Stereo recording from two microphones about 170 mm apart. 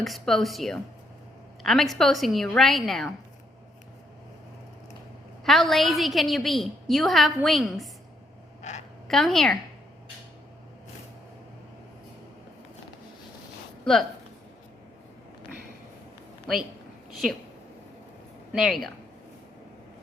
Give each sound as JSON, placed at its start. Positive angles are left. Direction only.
{"t": 0.0, "sound": "a woman's voice", "side_deg": 0}
{"t": 5.5, "sound": "a woman's voice", "side_deg": 0}
{"t": 8.7, "sound": "a sound", "side_deg": 45}
{"t": 9.0, "sound": "a woman's voice", "side_deg": 0}
{"t": 16.5, "sound": "a woman's voice", "side_deg": 0}
{"t": 18.5, "sound": "a woman's voice", "side_deg": 0}